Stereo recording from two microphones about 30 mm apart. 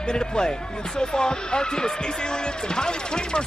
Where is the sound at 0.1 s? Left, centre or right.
Left.